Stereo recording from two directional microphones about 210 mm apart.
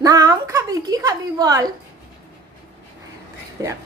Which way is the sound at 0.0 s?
15° right (ahead or behind).